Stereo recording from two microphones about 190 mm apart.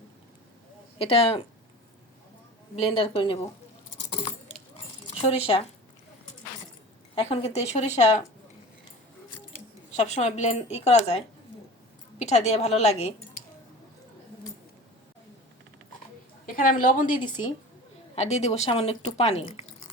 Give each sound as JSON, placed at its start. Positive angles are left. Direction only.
{"t": 0.9, "sound": "speech", "side_deg": 30}
{"t": 2.7, "sound": "a woman's voice", "side_deg": 30}
{"t": 5.0, "sound": "speech", "side_deg": 30}
{"t": 7.2, "sound": "speech", "side_deg": 35}
{"t": 9.9, "sound": "speech", "side_deg": 35}
{"t": 12.2, "sound": "speech", "side_deg": 35}
{"t": 16.5, "sound": "a woman's voice", "side_deg": 45}
{"t": 17.2, "sound": "a woman's voice", "side_deg": 25}
{"t": 18.1, "sound": "speech", "side_deg": 35}